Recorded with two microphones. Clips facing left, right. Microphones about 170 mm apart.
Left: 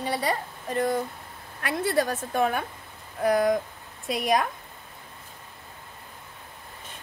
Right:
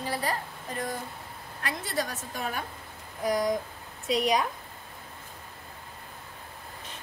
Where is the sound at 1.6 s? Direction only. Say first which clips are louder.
Left 7 dB; 60° left (ahead or behind).